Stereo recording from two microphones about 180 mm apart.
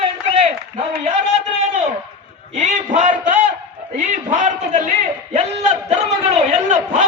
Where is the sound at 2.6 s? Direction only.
40° right (ahead or behind).